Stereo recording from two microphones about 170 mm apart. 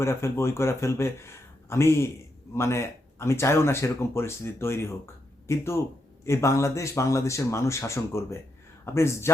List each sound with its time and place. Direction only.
0.0 s speech: 15° left (ahead or behind)